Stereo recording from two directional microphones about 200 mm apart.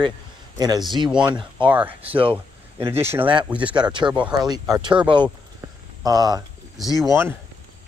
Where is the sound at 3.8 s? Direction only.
25° right (ahead or behind).